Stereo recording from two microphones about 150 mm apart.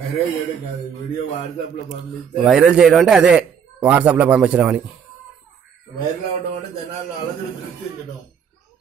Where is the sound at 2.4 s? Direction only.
5° right (ahead or behind).